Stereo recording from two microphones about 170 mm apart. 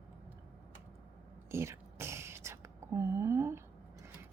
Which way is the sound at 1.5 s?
15° right (ahead or behind).